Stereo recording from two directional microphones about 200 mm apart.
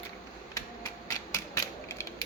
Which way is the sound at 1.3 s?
15° left (ahead or behind).